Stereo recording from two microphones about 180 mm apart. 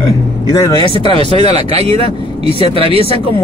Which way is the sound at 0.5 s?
20° left (ahead or behind).